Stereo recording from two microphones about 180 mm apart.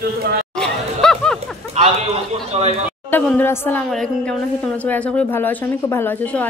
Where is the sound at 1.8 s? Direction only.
35° right (ahead or behind).